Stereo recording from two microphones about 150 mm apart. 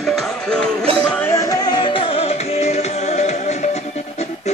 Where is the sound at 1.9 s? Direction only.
35° left (ahead or behind).